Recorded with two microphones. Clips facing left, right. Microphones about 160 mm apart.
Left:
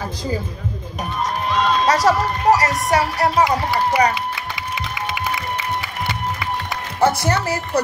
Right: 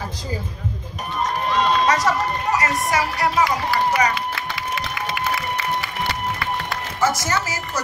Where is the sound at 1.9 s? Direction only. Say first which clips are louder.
Left 3 dB; 70° left (ahead or behind).